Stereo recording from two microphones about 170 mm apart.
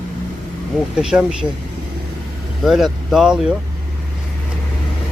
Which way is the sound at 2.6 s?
Centre (ahead or behind).